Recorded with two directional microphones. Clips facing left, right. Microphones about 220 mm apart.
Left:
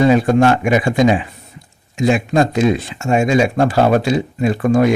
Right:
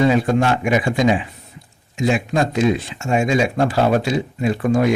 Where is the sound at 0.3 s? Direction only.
45° left (ahead or behind).